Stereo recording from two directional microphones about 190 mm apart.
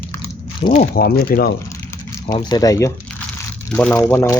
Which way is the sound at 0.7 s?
45° left (ahead or behind).